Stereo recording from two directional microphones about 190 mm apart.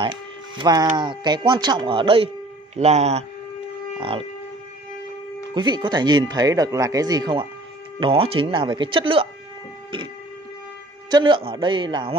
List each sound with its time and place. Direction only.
0.0 s hum: 25° right (ahead or behind)
0.9 s speech: 20° right (ahead or behind)
5.5 s speech: 25° right (ahead or behind)
11.1 s speech: 25° right (ahead or behind)